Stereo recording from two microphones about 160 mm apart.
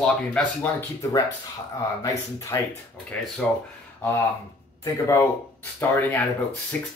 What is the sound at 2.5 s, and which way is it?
Speech, 20° left (ahead or behind).